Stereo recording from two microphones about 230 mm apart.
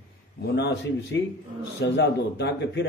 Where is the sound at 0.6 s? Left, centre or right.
Left.